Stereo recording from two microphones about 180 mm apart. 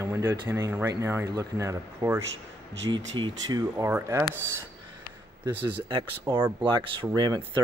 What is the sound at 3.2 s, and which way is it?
Speech, 20° right (ahead or behind).